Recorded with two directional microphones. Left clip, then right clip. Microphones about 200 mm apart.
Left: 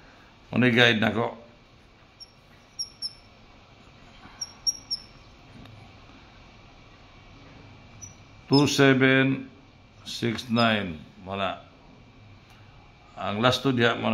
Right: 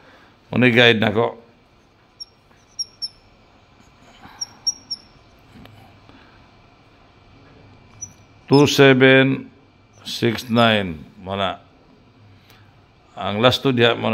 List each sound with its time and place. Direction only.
0.5 s speech: 35° right (ahead or behind)
8.5 s speech: 35° right (ahead or behind)
13.1 s speech: 35° right (ahead or behind)